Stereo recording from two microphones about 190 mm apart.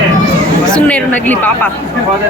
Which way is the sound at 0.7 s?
10° left (ahead or behind).